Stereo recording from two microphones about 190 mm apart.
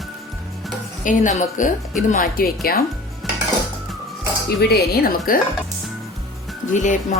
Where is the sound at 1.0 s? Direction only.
40° left (ahead or behind).